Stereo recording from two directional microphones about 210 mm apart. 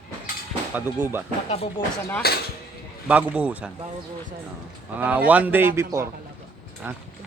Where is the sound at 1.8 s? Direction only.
25° left (ahead or behind).